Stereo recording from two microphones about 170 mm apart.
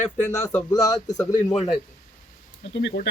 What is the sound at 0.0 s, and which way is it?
Speech, 40° left (ahead or behind).